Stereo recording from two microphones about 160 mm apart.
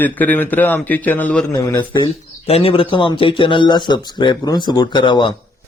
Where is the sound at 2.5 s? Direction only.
40° left (ahead or behind).